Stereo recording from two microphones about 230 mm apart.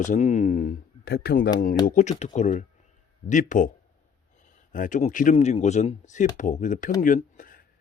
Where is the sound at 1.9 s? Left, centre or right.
Left.